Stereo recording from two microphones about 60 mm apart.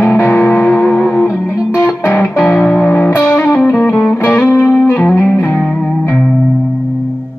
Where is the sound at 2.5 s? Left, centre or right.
Left.